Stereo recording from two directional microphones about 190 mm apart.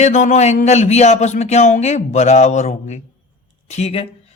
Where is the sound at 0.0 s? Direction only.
40° left (ahead or behind).